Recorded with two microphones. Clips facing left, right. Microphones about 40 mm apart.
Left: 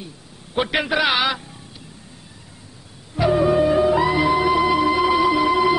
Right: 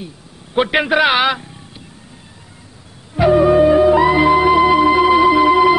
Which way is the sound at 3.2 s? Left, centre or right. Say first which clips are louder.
Right 6 dB; centre.